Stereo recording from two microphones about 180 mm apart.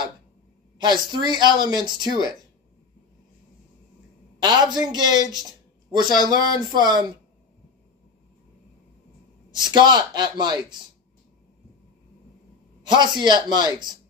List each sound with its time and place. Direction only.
0.7 s speech: 25° right (ahead or behind)
4.4 s speech: 25° right (ahead or behind)
9.5 s speech: 25° right (ahead or behind)
12.8 s speech: 25° right (ahead or behind)